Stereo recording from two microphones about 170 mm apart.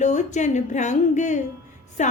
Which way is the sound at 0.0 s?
45° left (ahead or behind).